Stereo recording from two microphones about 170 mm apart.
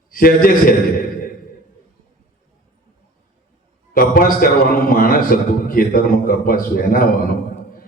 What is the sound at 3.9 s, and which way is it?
A man's voice, 55° left (ahead or behind).